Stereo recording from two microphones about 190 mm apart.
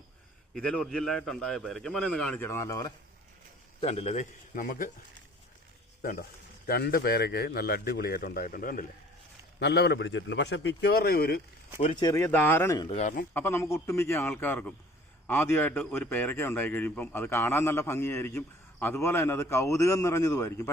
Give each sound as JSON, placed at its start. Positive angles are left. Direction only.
{"t": 0.5, "sound": "a man's voice", "side_deg": 5}
{"t": 3.8, "sound": "a man's voice", "side_deg": 35}
{"t": 6.0, "sound": "a man's voice", "side_deg": 45}
{"t": 9.6, "sound": "a man's voice", "side_deg": 60}
{"t": 11.8, "sound": "a man's voice", "side_deg": 25}
{"t": 12.9, "sound": "a man's voice", "side_deg": 40}
{"t": 13.3, "sound": "a man's voice", "side_deg": 10}